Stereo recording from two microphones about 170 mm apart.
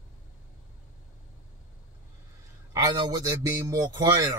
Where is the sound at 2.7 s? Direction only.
20° right (ahead or behind).